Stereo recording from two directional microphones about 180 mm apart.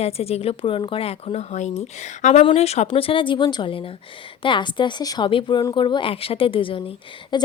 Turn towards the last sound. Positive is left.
turn(degrees=25)  # may be behind; listen again after turning